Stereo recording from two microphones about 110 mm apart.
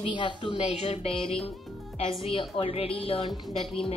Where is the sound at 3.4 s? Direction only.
Centre (ahead or behind).